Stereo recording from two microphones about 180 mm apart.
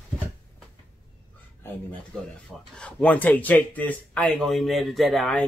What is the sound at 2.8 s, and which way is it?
Speech, 5° left (ahead or behind).